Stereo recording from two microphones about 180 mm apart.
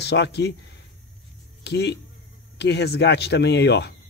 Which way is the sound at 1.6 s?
70° left (ahead or behind).